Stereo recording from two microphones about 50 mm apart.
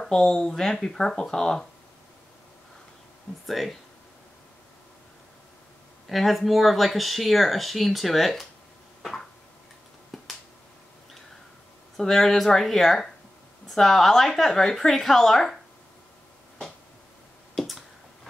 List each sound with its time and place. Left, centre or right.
0.1 s speech: centre
3.4 s speech: centre
6.0 s speech: centre
10.1 s finger snapping: centre
12.0 s speech: centre
17.6 s finger snapping: centre